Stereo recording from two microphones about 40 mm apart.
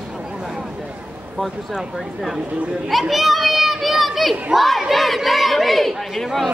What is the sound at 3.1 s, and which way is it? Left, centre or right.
Children playing, centre.